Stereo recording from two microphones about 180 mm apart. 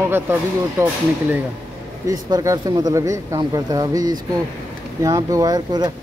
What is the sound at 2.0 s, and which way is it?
Speech, 20° right (ahead or behind).